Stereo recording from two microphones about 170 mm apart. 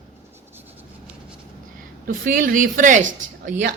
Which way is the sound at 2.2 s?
55° right (ahead or behind).